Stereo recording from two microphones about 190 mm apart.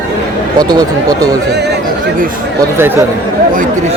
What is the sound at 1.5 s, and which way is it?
Speech, 60° right (ahead or behind).